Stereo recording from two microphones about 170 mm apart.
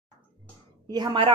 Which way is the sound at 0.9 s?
25° right (ahead or behind).